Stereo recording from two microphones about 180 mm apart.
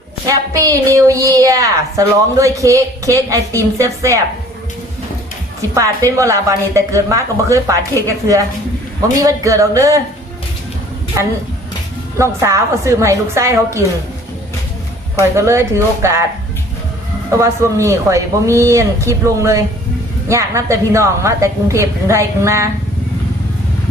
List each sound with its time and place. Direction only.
0.3 s a woman's voice: 20° right (ahead or behind)
5.7 s speech: 15° right (ahead or behind)
11.2 s speech: 15° right (ahead or behind)
15.4 s speech: 15° right (ahead or behind)
17.4 s speech: 15° right (ahead or behind)